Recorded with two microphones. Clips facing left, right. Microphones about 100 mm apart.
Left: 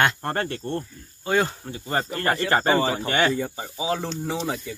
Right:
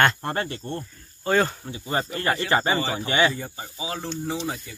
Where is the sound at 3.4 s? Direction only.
25° left (ahead or behind).